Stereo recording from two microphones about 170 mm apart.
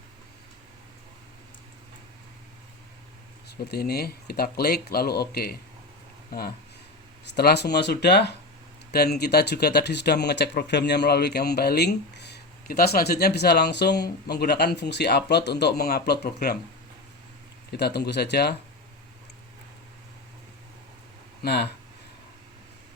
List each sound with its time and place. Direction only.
3.6 s speech: 65° left (ahead or behind)
17.7 s speech: 75° left (ahead or behind)
21.4 s speech: 75° left (ahead or behind)